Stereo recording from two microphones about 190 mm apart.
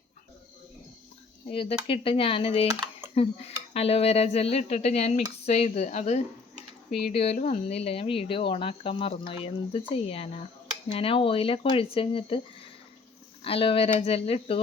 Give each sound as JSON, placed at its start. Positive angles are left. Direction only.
{"t": 1.5, "sound": "speech", "side_deg": 30}